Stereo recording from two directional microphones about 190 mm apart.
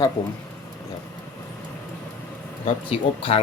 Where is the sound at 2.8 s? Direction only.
30° left (ahead or behind).